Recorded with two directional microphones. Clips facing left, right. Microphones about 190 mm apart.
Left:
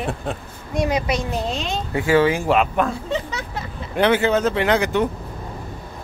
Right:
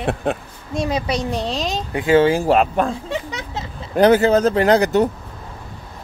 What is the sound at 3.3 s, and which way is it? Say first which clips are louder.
Vehicle: even; 25° right (ahead or behind).